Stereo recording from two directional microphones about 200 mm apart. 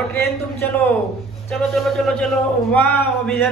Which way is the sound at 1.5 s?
Centre (ahead or behind).